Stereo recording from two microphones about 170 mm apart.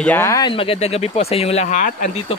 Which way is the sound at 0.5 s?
35° left (ahead or behind).